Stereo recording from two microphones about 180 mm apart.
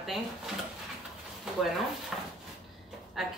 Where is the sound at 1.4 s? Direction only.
Centre (ahead or behind).